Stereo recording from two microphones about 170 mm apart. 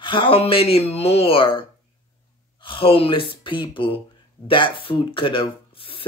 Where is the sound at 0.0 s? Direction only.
30° left (ahead or behind).